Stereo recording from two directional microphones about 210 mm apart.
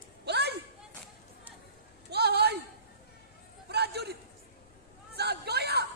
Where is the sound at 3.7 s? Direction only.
50° right (ahead or behind).